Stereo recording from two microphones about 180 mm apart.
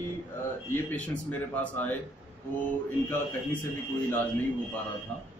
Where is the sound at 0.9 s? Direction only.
10° left (ahead or behind).